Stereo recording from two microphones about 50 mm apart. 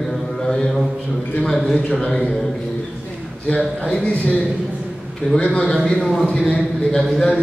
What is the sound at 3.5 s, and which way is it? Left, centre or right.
Speech, left.